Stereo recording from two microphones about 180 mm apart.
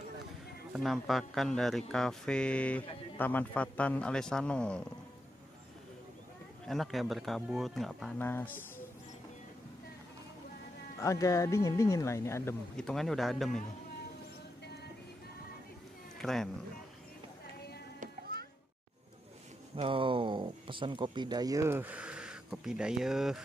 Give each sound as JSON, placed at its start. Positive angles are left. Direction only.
{"t": 0.7, "sound": "speech", "side_deg": 0}
{"t": 6.7, "sound": "speech", "side_deg": 0}
{"t": 11.0, "sound": "speech", "side_deg": 20}
{"t": 12.7, "sound": "speech", "side_deg": 5}
{"t": 16.2, "sound": "speech", "side_deg": 0}
{"t": 19.7, "sound": "speech", "side_deg": -30}